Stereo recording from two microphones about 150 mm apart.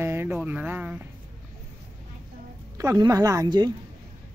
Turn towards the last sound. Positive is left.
turn(degrees=-25)  # may be behind; listen again after turning